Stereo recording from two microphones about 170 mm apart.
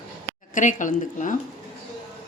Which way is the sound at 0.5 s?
50° left (ahead or behind).